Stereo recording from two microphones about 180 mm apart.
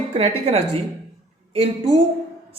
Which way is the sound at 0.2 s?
35° right (ahead or behind).